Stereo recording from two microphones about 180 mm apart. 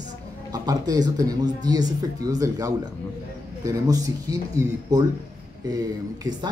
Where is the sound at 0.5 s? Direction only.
20° right (ahead or behind).